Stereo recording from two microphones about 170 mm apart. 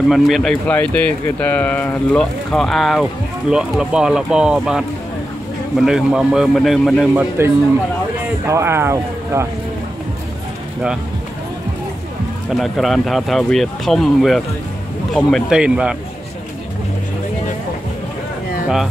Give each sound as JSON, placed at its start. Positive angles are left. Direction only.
{"t": 0.1, "sound": "speech", "side_deg": 0}
{"t": 8.5, "sound": "speech", "side_deg": -15}
{"t": 12.4, "sound": "speech", "side_deg": 0}